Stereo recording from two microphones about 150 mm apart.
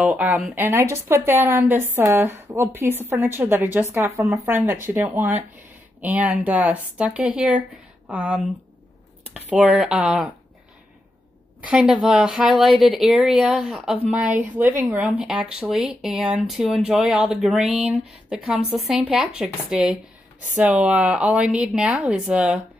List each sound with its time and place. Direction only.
0.0 s a woman's voice: 10° right (ahead or behind)
11.6 s speech: 5° right (ahead or behind)